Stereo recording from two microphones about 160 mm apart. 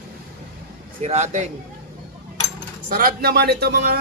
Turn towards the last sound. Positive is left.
turn(degrees=-75)  # may be behind; listen again after turning